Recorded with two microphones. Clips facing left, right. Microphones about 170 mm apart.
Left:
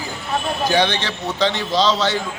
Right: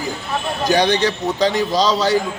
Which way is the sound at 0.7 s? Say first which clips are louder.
Right 5 dB; 40° right (ahead or behind).